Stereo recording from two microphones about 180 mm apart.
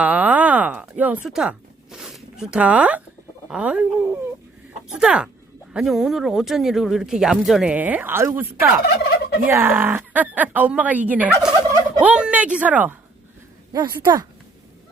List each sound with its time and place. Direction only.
0.0 s a sound: 10° right (ahead or behind)
3.5 s speech: 5° right (ahead or behind)
9.0 s fowl: 65° left (ahead or behind)
9.5 s speech: 10° right (ahead or behind)
13.7 s speech: 25° right (ahead or behind)